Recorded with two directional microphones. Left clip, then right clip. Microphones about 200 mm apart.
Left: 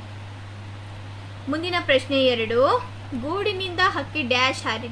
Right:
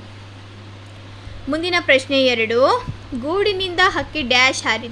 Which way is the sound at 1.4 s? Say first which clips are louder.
Right 6 dB; 45° right (ahead or behind).